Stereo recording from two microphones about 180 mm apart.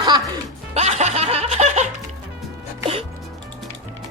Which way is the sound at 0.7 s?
40° right (ahead or behind).